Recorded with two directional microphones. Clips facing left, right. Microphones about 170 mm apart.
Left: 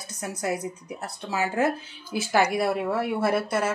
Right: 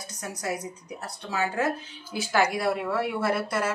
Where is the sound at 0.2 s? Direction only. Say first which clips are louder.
Left 3 dB; 25° left (ahead or behind).